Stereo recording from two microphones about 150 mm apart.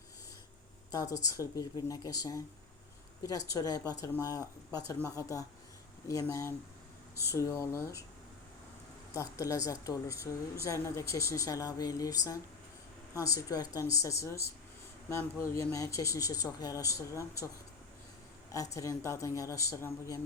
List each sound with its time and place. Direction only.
0.9 s speech: 25° left (ahead or behind)
9.1 s speech: 20° left (ahead or behind)
18.5 s speech: 20° left (ahead or behind)